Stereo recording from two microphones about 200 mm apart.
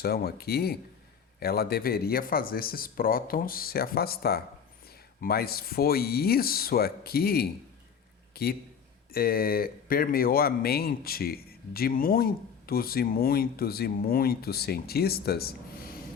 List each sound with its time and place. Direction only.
0.0 s speech: 50° left (ahead or behind)